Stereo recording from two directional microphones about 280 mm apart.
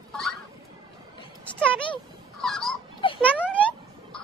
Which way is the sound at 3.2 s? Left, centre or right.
Centre.